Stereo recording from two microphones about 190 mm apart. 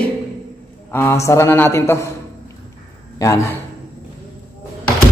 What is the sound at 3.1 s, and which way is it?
Speech, 15° left (ahead or behind).